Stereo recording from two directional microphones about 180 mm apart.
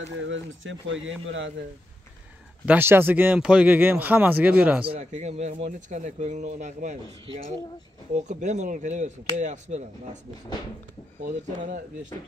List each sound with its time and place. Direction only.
0.0 s speech: 90° right
2.6 s speech: 10° right (ahead or behind)
4.8 s speech: 35° right (ahead or behind)
8.2 s speech: 40° right (ahead or behind)